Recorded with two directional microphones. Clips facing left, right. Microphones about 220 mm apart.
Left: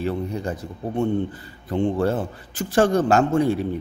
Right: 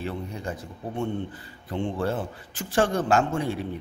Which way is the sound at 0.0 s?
40° left (ahead or behind).